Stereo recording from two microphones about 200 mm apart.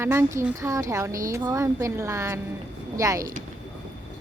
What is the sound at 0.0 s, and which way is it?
A woman's voice, 15° right (ahead or behind).